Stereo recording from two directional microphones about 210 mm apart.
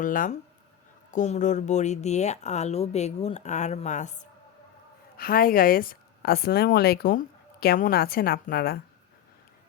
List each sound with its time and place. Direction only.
0.0 s a woman's voice: 40° left (ahead or behind)